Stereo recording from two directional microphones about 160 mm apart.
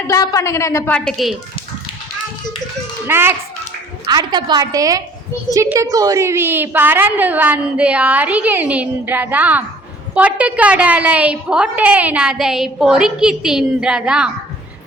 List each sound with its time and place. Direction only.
0.1 s a woman's voice: 20° left (ahead or behind); by 1.4 s centre (ahead or behind)
3.1 s a woman's voice: 15° right (ahead or behind)
4.0 s a woman's voice: 25° right (ahead or behind); by 14.3 s 5° right (ahead or behind)